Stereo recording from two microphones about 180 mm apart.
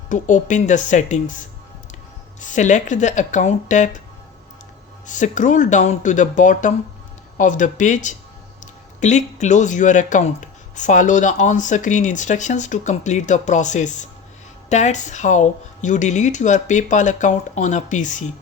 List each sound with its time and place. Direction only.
0.1 s speech: 45° left (ahead or behind)
5.0 s speech: 45° left (ahead or behind)